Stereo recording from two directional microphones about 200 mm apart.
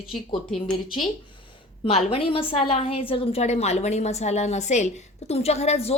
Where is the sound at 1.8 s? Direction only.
25° left (ahead or behind).